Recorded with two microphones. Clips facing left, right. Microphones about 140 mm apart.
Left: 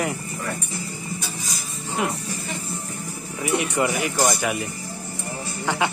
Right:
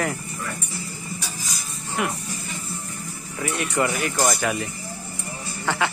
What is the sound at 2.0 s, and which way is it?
Speech, 25° left (ahead or behind).